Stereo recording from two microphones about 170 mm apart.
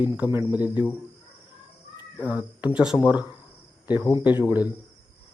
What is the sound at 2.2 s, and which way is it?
Speech, 10° right (ahead or behind).